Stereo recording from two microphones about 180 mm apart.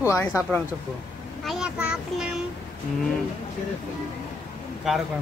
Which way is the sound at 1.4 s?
5° right (ahead or behind).